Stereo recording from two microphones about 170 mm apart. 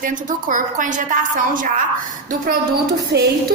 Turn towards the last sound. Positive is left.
turn(degrees=-70)  # may be behind; listen again after turning